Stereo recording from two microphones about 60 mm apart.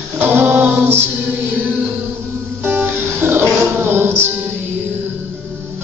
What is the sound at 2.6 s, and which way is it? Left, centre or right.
Music, right.